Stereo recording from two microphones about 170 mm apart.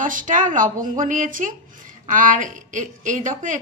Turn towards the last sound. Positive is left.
turn(degrees=-50)  # may be behind; listen again after turning